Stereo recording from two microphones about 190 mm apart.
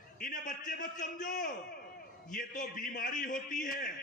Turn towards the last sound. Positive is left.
turn(degrees=45)  # may be behind; listen again after turning